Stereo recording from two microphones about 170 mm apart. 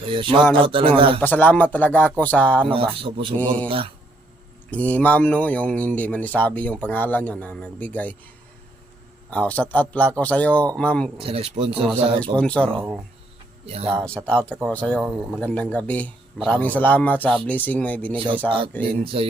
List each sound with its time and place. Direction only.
0.0 s speech: 30° right (ahead or behind)
1.2 s speech: 10° left (ahead or behind)
2.6 s speech: 30° right (ahead or behind)
3.3 s speech: 10° left (ahead or behind)
4.7 s speech: 10° left (ahead or behind)
9.3 s speech: 10° left (ahead or behind)
11.2 s speech: 35° right (ahead or behind)
11.9 s speech: 5° left (ahead or behind)
14.3 s speech: 5° left (ahead or behind)
18.8 s speech: 35° right (ahead or behind)